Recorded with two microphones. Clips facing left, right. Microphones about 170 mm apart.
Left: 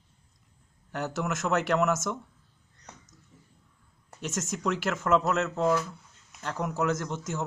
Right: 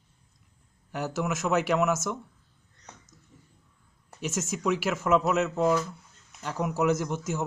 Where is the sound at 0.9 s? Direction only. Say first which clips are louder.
Right 1 dB; 5° right (ahead or behind).